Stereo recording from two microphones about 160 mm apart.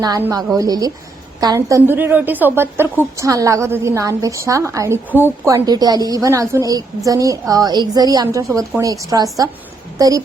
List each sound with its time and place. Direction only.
0.2 s a woman's voice: 20° right (ahead or behind)